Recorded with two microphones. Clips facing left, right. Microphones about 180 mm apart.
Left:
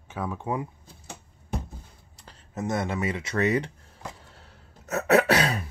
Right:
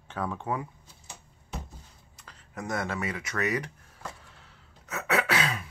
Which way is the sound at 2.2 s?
25° left (ahead or behind).